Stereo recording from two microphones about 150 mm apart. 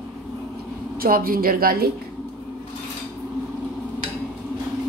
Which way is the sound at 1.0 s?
75° right (ahead or behind).